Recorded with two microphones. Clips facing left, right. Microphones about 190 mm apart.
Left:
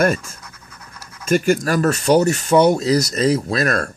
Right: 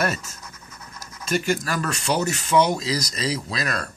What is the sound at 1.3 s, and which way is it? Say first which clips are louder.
Speech: left 7 dB; 45° left (ahead or behind).